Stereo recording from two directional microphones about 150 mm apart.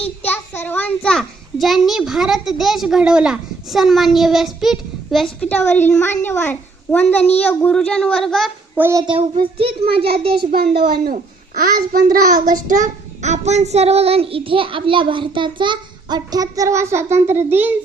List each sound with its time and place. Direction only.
0.3 s a child's voice: 15° left (ahead or behind)
5.5 s a child's voice: 15° left (ahead or behind)
8.7 s a child's voice: 15° right (ahead or behind)
9.4 s child singing: 40° right (ahead or behind)
10.5 s a child's voice: 90° right
11.0 s a child's voice: 70° right (ahead or behind)
12.1 s child singing: 65° right (ahead or behind); by 17.7 s 15° right (ahead or behind)